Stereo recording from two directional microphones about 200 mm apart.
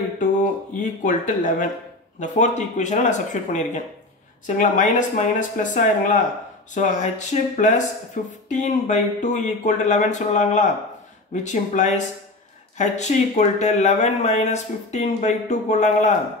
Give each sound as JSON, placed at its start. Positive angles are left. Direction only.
{"t": 0.7, "sound": "speech", "side_deg": 40}